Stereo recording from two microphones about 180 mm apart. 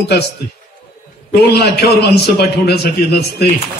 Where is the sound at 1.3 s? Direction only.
60° left (ahead or behind).